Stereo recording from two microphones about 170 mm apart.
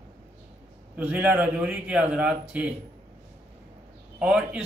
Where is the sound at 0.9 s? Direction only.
10° right (ahead or behind).